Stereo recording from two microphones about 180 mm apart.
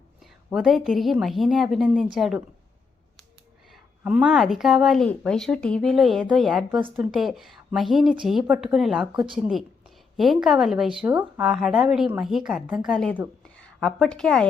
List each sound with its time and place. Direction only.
0.5 s a woman's voice: centre (ahead or behind)
3.7 s a woman's voice: 5° right (ahead or behind)
13.4 s a sound: 5° left (ahead or behind)